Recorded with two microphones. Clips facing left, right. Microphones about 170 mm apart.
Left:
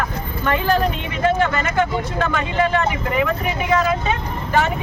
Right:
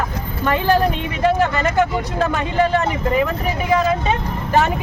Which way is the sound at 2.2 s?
40° right (ahead or behind).